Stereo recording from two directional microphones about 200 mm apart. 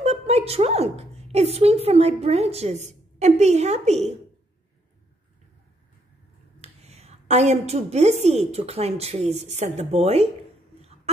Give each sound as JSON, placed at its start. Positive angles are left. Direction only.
{"t": 0.0, "sound": "a woman's voice", "side_deg": -30}
{"t": 6.6, "sound": "a woman's voice", "side_deg": -30}